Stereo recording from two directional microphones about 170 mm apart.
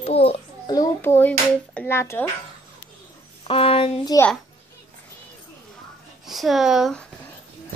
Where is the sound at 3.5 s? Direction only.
35° left (ahead or behind).